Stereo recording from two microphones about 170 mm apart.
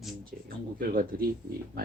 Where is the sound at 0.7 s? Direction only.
60° right (ahead or behind).